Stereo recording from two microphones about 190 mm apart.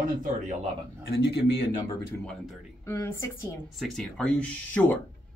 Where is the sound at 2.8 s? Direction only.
15° left (ahead or behind).